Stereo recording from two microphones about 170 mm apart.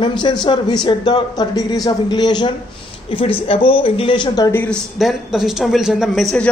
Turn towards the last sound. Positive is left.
turn(degrees=0)  # may be behind; listen again after turning